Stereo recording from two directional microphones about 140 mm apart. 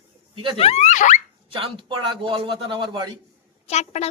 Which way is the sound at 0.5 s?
45° left (ahead or behind).